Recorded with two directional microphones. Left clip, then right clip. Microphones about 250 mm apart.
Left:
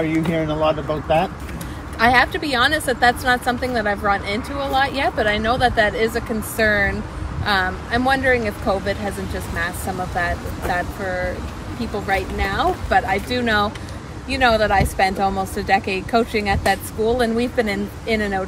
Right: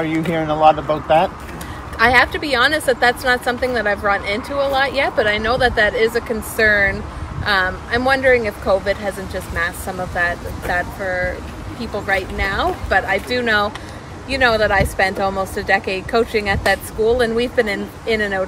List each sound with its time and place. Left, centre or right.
0.1 s speech: centre
0.4 s speech: right
2.0 s speech: centre